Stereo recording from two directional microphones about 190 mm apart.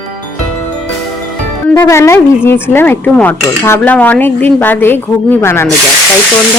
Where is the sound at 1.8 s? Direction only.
15° left (ahead or behind).